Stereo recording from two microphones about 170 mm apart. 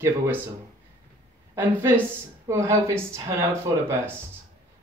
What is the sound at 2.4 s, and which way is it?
Speech, 15° right (ahead or behind).